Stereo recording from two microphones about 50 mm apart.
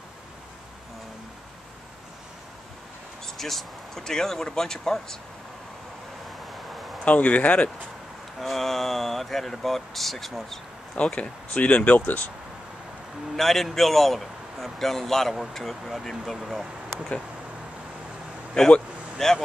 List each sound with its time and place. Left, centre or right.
3.3 s speech: centre
7.1 s speech: left
8.4 s speech: centre
11.0 s speech: left
13.4 s a man's voice: centre
18.5 s a sound: centre